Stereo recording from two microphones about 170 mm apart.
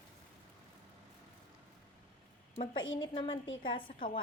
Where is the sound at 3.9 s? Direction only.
55° left (ahead or behind).